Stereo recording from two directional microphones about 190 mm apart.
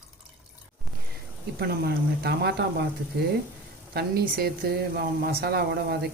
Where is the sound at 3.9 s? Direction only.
55° right (ahead or behind).